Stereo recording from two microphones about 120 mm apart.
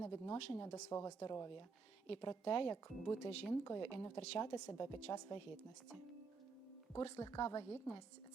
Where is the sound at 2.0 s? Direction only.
40° left (ahead or behind).